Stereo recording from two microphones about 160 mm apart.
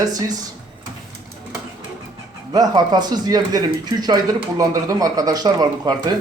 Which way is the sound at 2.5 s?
25° right (ahead or behind).